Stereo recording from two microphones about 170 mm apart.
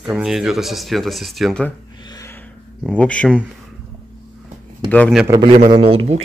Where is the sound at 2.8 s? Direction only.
5° left (ahead or behind).